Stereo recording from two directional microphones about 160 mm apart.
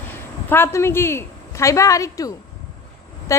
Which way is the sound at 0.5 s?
15° left (ahead or behind).